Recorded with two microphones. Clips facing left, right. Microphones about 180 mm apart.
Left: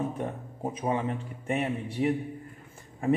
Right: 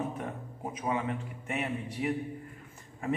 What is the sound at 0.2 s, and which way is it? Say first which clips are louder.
A man's voice: left 5 dB; 30° left (ahead or behind).